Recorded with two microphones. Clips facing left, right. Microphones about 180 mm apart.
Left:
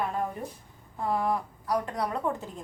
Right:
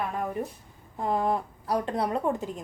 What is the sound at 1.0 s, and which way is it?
A woman's voice, 20° right (ahead or behind).